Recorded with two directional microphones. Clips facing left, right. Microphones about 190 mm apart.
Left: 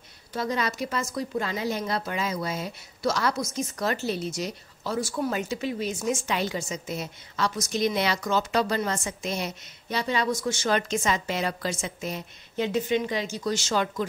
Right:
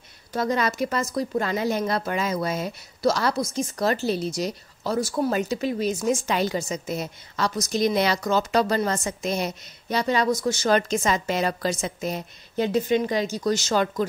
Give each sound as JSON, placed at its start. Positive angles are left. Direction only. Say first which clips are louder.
{"t": 0.3, "sound": "speech", "louder": "right 4 dB", "side_deg": -50}
{"t": 1.4, "sound": "a woman's voice", "louder": "right 4 dB", "side_deg": -50}